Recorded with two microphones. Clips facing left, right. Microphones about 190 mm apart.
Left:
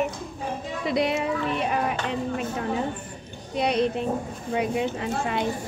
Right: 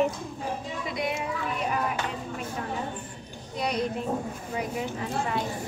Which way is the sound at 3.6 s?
70° left (ahead or behind).